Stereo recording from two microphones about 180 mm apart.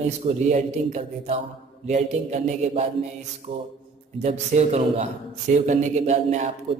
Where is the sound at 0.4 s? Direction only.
40° right (ahead or behind).